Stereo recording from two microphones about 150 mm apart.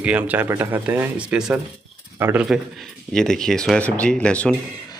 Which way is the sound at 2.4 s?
Centre (ahead or behind).